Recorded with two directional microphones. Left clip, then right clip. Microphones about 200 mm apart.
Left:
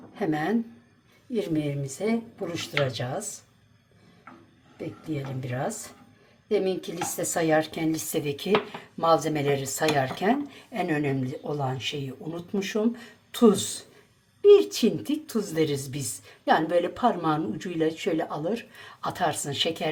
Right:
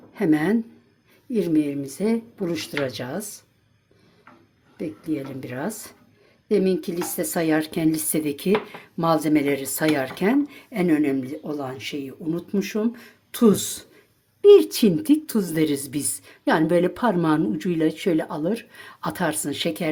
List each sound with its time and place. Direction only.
0.1 s a woman's voice: 50° right (ahead or behind)
4.8 s a woman's voice: 50° right (ahead or behind)